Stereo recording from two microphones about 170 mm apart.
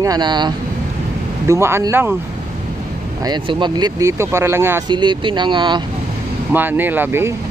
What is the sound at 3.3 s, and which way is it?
Speech, 25° right (ahead or behind).